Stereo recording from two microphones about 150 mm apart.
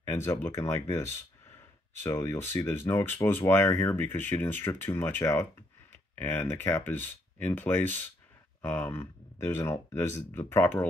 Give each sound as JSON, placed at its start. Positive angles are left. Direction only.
{"t": 0.0, "sound": "speech", "side_deg": 20}